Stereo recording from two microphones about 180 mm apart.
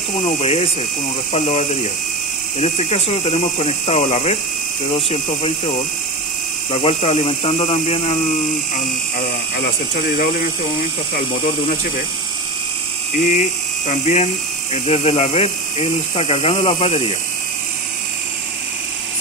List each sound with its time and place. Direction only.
0.4 s speech: 35° left (ahead or behind)
6.7 s speech: 35° left (ahead or behind)
13.3 s speech: 40° left (ahead or behind)